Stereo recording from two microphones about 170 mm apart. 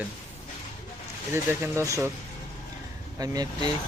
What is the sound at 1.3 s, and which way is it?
Speech, 15° right (ahead or behind).